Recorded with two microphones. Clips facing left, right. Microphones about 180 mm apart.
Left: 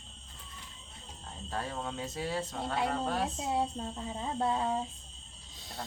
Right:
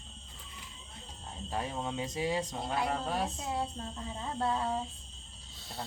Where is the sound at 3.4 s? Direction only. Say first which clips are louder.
Left 3 dB; 20° left (ahead or behind).